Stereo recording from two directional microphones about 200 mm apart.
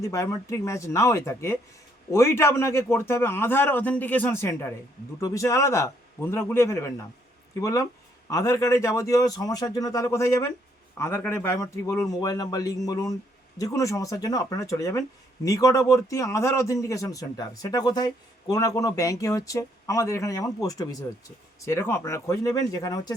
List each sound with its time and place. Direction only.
0.0 s a man's voice: 15° left (ahead or behind)